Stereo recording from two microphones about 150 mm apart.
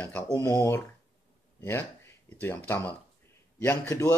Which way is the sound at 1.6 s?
15° left (ahead or behind).